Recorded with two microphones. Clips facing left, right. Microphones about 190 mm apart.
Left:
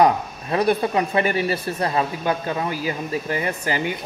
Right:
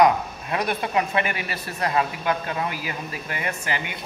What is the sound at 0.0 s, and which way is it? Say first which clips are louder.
Speech: left 1 dB; 30° left (ahead or behind).